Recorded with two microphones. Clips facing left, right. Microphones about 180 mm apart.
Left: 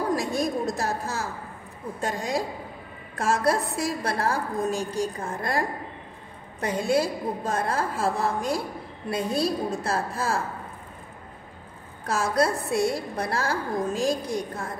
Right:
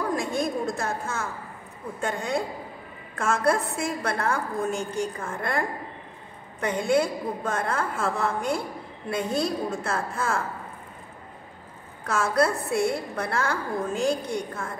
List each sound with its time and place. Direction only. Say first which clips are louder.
0.1 s a woman's voice: left 1 dB; 40° left (ahead or behind)
12.1 s a woman's voice: even; 30° left (ahead or behind)